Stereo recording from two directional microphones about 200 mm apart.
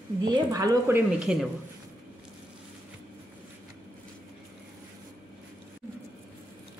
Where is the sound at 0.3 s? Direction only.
20° right (ahead or behind); by 1.5 s 5° right (ahead or behind).